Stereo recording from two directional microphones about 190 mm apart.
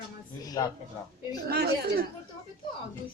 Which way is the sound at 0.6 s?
20° left (ahead or behind).